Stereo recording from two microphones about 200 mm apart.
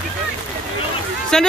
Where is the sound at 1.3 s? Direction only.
Centre (ahead or behind).